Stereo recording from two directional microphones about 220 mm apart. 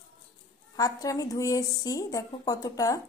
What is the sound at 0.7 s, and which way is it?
A woman's voice, 15° left (ahead or behind).